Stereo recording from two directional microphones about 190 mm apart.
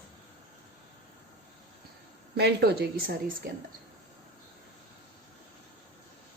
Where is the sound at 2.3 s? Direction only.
60° right (ahead or behind).